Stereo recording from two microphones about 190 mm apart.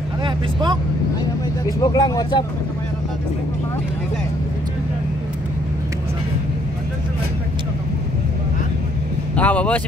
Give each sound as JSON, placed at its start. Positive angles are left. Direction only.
{"t": 0.2, "sound": "vehicle", "side_deg": -25}
{"t": 1.8, "sound": "speech", "side_deg": 20}
{"t": 9.3, "sound": "speech", "side_deg": 5}